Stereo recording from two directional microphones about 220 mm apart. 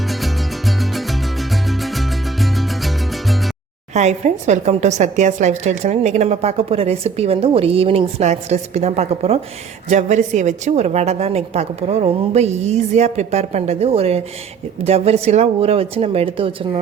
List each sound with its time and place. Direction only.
0.1 s music: centre (ahead or behind)
3.9 s a woman's voice: 30° right (ahead or behind)